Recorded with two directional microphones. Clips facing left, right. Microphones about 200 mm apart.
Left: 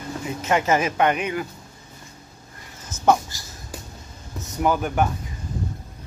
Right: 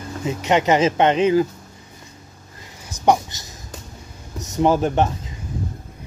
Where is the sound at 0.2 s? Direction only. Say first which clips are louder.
Right 4 dB; 20° right (ahead or behind).